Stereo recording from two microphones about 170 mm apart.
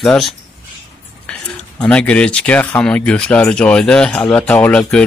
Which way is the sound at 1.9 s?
5° left (ahead or behind).